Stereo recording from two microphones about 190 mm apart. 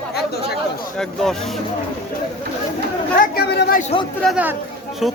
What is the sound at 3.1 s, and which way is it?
Speech, 50° left (ahead or behind).